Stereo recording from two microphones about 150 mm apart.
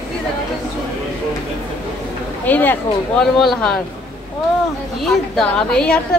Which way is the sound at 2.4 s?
10° left (ahead or behind).